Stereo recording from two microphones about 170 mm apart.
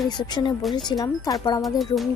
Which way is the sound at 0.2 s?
25° left (ahead or behind).